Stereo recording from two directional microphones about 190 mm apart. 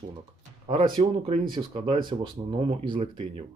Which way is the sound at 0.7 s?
35° right (ahead or behind).